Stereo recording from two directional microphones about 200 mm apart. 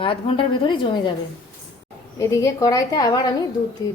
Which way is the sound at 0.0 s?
25° left (ahead or behind).